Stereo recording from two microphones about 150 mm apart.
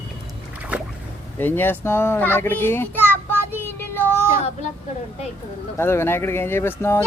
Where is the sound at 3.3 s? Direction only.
15° right (ahead or behind).